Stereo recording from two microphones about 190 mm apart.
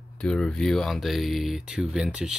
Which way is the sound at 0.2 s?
5° left (ahead or behind).